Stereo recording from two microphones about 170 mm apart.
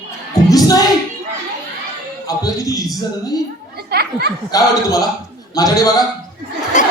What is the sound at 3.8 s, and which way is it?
Speech, 70° right (ahead or behind).